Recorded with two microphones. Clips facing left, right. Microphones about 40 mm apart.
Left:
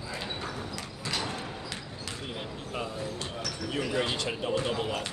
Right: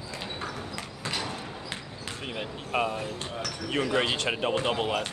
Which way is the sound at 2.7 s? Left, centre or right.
Right.